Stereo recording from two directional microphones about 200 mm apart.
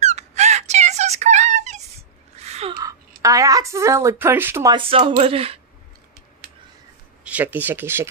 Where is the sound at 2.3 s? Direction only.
30° right (ahead or behind).